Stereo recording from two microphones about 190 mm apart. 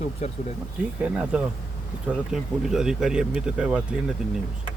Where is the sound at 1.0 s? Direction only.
5° right (ahead or behind).